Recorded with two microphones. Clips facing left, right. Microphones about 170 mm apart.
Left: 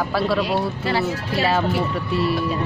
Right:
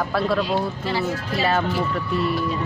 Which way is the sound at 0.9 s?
70° left (ahead or behind).